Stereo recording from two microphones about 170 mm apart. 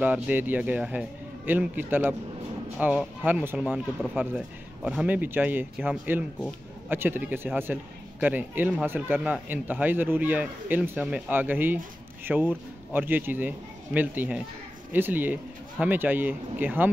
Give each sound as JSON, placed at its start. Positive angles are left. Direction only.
{"t": 0.0, "sound": "speech", "side_deg": -10}